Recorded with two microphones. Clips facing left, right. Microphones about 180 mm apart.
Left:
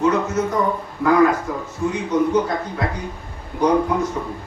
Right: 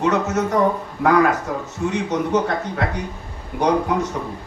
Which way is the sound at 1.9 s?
75° right (ahead or behind).